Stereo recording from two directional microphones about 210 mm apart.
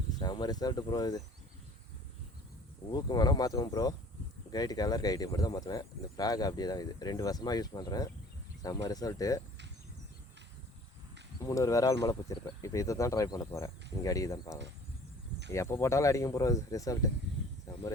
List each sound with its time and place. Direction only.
0.2 s speech: 20° left (ahead or behind)
2.9 s speech: 20° left (ahead or behind)
11.4 s speech: 15° left (ahead or behind)